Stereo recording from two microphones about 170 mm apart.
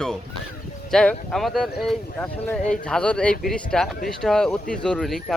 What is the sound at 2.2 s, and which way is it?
A man's voice, 10° left (ahead or behind).